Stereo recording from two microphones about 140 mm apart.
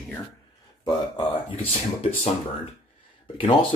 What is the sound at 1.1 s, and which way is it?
Speech, 45° left (ahead or behind).